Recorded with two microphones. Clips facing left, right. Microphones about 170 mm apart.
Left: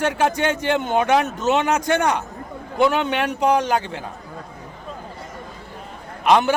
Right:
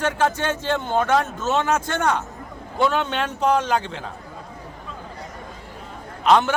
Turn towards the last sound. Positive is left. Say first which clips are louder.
# left 1 dB
turn(degrees=10)  # may be behind; listen again after turning